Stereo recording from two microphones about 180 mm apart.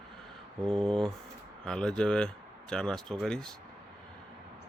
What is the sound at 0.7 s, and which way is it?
Speech, 5° left (ahead or behind).